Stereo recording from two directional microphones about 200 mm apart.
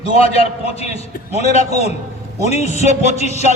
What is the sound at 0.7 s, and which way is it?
A man's voice, 30° left (ahead or behind).